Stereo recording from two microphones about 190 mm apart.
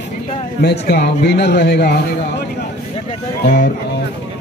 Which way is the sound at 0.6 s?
60° left (ahead or behind).